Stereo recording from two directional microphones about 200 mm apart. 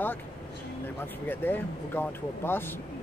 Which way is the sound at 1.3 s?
10° left (ahead or behind).